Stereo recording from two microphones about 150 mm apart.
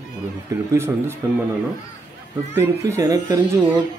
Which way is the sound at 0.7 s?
15° right (ahead or behind).